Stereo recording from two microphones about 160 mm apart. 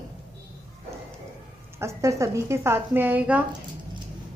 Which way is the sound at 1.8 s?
20° right (ahead or behind).